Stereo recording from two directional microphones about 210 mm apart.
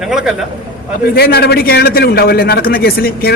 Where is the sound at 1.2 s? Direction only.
50° left (ahead or behind).